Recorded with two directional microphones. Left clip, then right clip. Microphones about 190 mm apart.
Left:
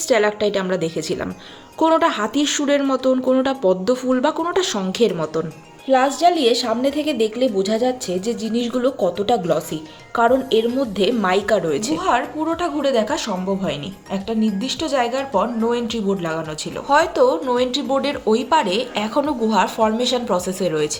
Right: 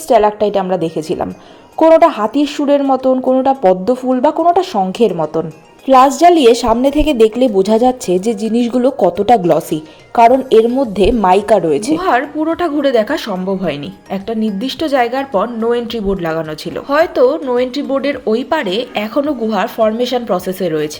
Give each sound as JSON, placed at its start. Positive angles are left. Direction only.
{"t": 0.1, "sound": "speech", "side_deg": -10}
{"t": 5.9, "sound": "a woman's voice", "side_deg": -40}
{"t": 16.9, "sound": "speech", "side_deg": -10}